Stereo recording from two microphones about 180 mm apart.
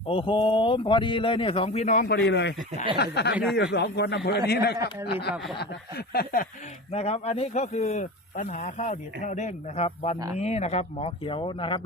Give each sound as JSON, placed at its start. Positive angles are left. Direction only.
{"t": 0.1, "sound": "a man's voice", "side_deg": 30}
{"t": 2.0, "sound": "a man's voice", "side_deg": 70}
{"t": 2.9, "sound": "a sound", "side_deg": 65}
{"t": 3.5, "sound": "a man's voice", "side_deg": 65}
{"t": 5.3, "sound": "speech", "side_deg": 0}
{"t": 5.5, "sound": "a sound", "side_deg": 60}
{"t": 6.9, "sound": "speech", "side_deg": 35}